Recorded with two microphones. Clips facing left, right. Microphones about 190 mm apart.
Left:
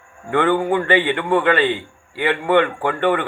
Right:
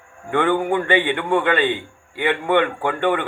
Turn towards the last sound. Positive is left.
turn(degrees=-15)  # may be behind; listen again after turning